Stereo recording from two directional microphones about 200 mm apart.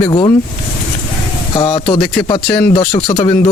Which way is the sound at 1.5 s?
25° left (ahead or behind).